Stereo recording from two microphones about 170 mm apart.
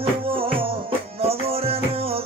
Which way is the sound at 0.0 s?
35° right (ahead or behind).